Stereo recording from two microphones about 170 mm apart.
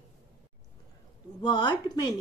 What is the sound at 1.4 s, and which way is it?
Speech, 25° left (ahead or behind).